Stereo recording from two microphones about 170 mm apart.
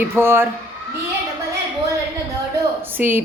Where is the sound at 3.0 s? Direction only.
10° right (ahead or behind).